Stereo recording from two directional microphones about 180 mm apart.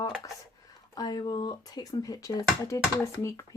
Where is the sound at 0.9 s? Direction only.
20° left (ahead or behind).